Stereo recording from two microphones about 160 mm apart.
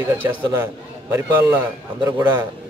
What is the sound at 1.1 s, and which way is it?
A man's voice, 15° right (ahead or behind).